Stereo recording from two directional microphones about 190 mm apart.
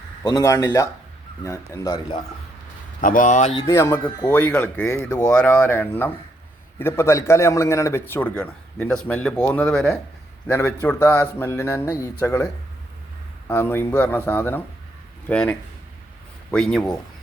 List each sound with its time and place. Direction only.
0.2 s a man's voice: 15° left (ahead or behind)
3.0 s speech: 45° left (ahead or behind)
3.7 s a man's voice: 15° left (ahead or behind)
13.5 s a man's voice: 10° left (ahead or behind)